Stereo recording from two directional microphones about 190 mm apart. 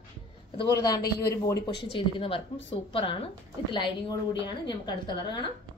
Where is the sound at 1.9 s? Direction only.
30° left (ahead or behind).